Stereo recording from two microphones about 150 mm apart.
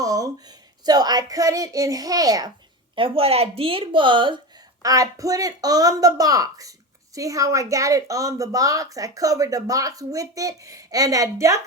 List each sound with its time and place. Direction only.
0.0 s a sound: 25° right (ahead or behind)
0.9 s speech: 25° right (ahead or behind)
2.9 s a woman's voice: 35° right (ahead or behind); by 11.6 s 20° right (ahead or behind)